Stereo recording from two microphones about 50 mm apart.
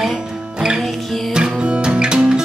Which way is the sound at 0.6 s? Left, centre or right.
Centre.